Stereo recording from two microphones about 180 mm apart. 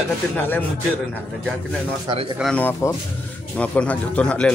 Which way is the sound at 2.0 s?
25° right (ahead or behind).